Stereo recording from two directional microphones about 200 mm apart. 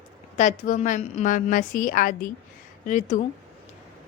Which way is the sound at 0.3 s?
35° left (ahead or behind).